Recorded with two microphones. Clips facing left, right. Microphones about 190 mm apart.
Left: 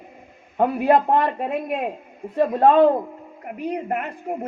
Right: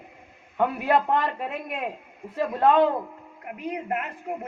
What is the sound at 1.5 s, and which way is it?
A man's voice, 50° left (ahead or behind).